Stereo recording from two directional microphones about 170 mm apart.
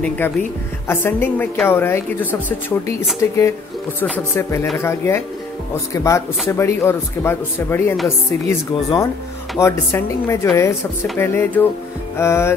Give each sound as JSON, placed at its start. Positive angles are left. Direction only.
{"t": 0.2, "sound": "speech", "side_deg": 10}
{"t": 3.2, "sound": "speech", "side_deg": 15}